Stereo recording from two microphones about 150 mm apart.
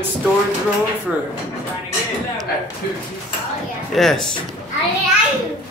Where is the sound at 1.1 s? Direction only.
10° right (ahead or behind).